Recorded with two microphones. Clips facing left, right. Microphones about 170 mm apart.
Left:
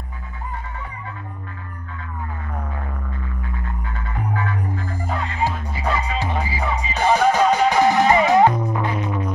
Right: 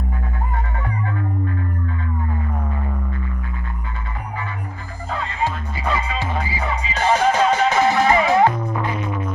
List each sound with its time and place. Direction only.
7.0 s music: 10° left (ahead or behind)